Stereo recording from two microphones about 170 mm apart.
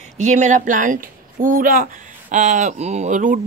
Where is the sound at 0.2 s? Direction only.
45° right (ahead or behind).